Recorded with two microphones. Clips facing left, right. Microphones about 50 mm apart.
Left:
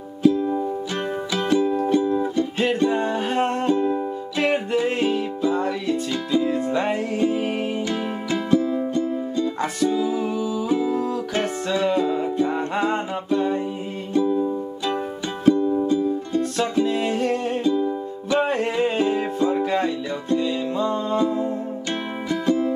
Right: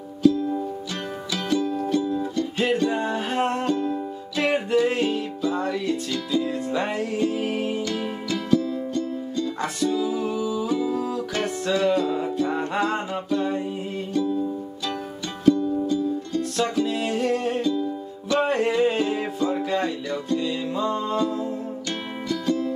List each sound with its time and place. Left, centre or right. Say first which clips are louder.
0.2 s music: left 1 dB; left
3.0 s music: left 2 dB; centre
3.6 s music: left 4 dB; left
4.4 s music: even; centre
10.4 s music: left 2 dB; left
18.3 s music: even; centre
20.4 s music: left 2 dB; centre
21.2 s music: left 3 dB; left